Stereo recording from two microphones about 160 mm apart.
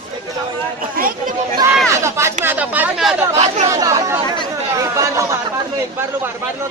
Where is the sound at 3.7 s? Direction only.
20° right (ahead or behind).